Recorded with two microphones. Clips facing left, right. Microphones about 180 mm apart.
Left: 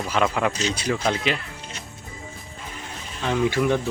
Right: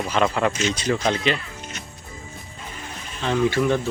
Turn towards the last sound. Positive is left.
turn(degrees=10)  # may be behind; listen again after turning